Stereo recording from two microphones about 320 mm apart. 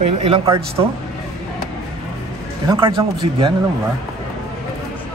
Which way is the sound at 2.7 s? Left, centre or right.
Centre.